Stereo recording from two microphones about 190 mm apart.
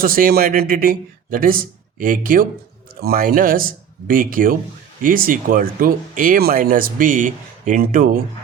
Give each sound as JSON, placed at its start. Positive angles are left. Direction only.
{"t": 0.0, "sound": "speech", "side_deg": -50}